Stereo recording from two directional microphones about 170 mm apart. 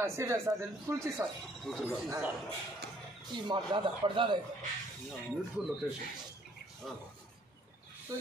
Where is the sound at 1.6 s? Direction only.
Centre (ahead or behind).